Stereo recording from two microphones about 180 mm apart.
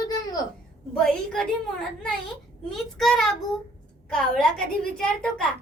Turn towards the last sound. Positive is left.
turn(degrees=5)  # may be behind; listen again after turning